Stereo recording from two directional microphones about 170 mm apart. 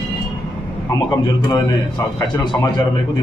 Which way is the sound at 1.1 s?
25° left (ahead or behind).